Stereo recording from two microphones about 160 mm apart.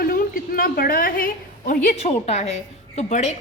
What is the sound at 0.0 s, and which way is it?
A woman's voice, 65° left (ahead or behind).